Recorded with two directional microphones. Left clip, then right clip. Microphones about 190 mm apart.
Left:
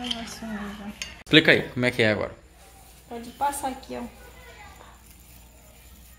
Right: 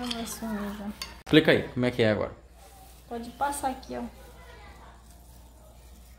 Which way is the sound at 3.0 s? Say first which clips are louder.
Left 3 dB; 25° right (ahead or behind).